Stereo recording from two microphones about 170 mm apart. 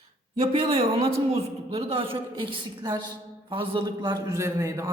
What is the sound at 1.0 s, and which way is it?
A man's voice, 35° right (ahead or behind).